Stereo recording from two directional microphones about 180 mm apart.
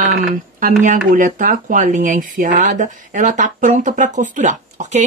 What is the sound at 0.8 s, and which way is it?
Speech, 50° right (ahead or behind).